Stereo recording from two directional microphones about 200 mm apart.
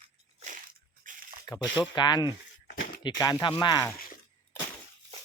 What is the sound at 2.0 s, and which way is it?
Speech, 20° left (ahead or behind).